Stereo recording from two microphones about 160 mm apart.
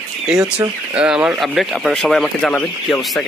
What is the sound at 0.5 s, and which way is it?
Speech, 5° right (ahead or behind).